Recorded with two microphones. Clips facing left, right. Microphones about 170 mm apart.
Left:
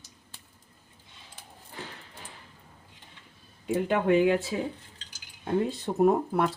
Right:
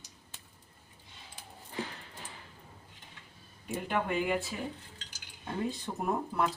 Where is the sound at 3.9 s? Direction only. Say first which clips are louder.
Left 8 dB; 90° left.